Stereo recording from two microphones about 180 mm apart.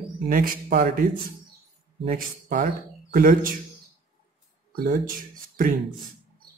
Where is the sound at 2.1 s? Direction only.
45° right (ahead or behind).